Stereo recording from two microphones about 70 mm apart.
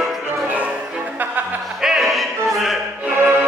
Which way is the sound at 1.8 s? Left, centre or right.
Centre.